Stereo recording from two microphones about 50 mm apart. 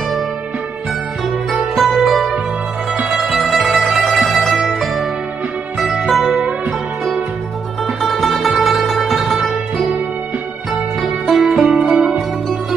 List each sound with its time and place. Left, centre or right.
1.8 s music: centre
7.8 s music: centre
10.7 s music: centre